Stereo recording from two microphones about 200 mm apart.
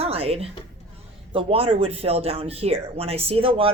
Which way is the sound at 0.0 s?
30° right (ahead or behind).